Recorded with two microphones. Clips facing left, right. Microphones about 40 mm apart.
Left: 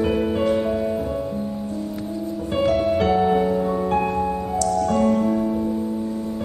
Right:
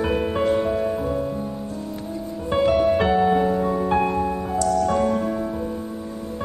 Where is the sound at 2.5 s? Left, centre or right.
Centre.